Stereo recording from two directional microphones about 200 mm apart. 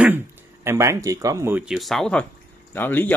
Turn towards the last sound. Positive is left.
turn(degrees=10)  # may be behind; listen again after turning